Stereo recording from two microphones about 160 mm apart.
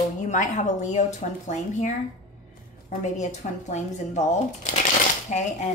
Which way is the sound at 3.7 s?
45° left (ahead or behind).